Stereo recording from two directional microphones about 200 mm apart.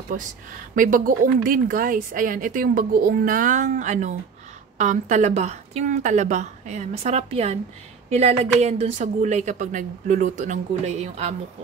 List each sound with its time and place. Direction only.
0.1 s a woman's voice: 40° right (ahead or behind)